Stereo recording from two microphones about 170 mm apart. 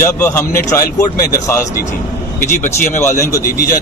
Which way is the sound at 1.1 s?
60° left (ahead or behind).